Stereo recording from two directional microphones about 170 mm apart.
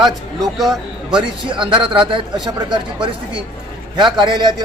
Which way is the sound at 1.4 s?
30° right (ahead or behind).